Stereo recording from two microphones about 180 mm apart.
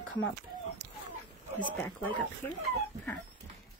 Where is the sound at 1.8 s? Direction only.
10° left (ahead or behind).